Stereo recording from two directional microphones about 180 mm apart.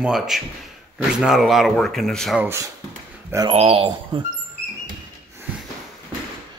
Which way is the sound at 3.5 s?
35° right (ahead or behind).